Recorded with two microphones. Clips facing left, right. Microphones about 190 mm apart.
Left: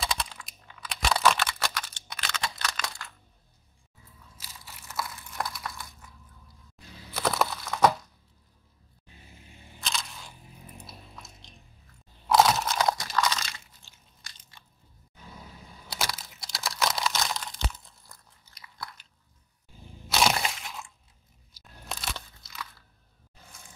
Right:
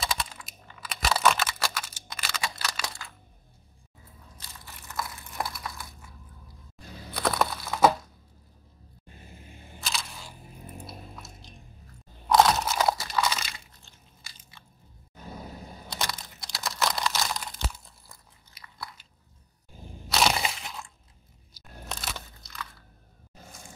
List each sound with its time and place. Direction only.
0.0 s computer keyboard: 5° right (ahead or behind)
4.6 s crushing: 5° left (ahead or behind)
5.4 s crumpling: 5° right (ahead or behind)
7.2 s a sound: centre (ahead or behind)
9.8 s single-lens reflex camera: 5° right (ahead or behind)
10.9 s biting: centre (ahead or behind)
12.3 s crunch: centre (ahead or behind)
13.8 s biting: centre (ahead or behind)
15.1 s vehicle: 45° right (ahead or behind)
15.9 s a sound: 5° left (ahead or behind)
18.6 s biting: 5° right (ahead or behind)
20.1 s crunch: centre (ahead or behind)
23.3 s vehicle: 45° right (ahead or behind)